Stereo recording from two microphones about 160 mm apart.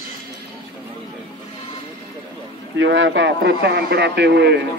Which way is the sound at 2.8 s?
90° right.